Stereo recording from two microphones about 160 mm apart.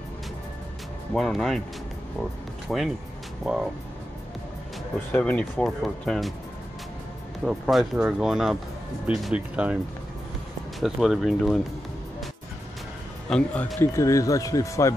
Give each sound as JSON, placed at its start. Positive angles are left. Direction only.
{"t": 1.1, "sound": "speech", "side_deg": 0}
{"t": 2.7, "sound": "speech", "side_deg": 0}
{"t": 5.1, "sound": "speech", "side_deg": 10}
{"t": 7.4, "sound": "speech", "side_deg": 0}
{"t": 10.8, "sound": "speech", "side_deg": 0}
{"t": 13.3, "sound": "speech", "side_deg": 5}